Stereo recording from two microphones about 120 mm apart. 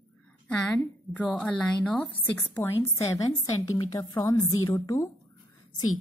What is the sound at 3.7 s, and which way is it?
A woman's voice, 40° left (ahead or behind).